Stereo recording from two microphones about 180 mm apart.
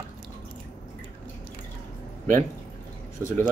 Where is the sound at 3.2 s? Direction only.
10° left (ahead or behind).